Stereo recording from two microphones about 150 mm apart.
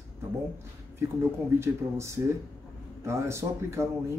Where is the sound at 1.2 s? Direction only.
15° right (ahead or behind).